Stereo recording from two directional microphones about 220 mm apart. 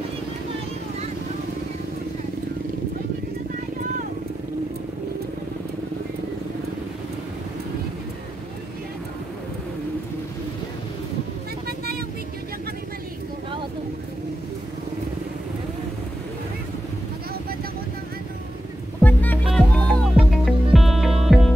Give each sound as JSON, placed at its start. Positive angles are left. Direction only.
{"t": 11.6, "sound": "vehicle", "side_deg": -45}
{"t": 18.9, "sound": "music", "side_deg": 5}